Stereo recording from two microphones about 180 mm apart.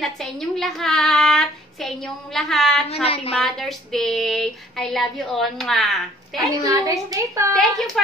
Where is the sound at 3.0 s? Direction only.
30° left (ahead or behind).